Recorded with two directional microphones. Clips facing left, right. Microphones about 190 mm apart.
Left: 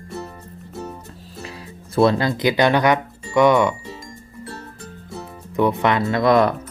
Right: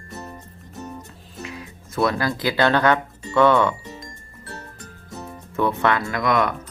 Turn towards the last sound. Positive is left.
turn(degrees=35)  # may be behind; listen again after turning